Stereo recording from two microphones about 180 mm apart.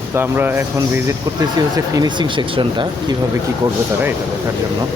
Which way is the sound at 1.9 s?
25° right (ahead or behind).